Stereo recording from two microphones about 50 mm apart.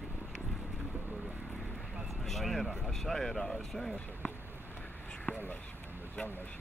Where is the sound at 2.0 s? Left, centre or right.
Centre.